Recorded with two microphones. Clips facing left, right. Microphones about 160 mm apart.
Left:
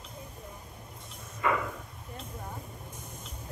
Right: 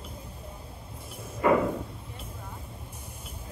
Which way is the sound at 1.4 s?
30° right (ahead or behind).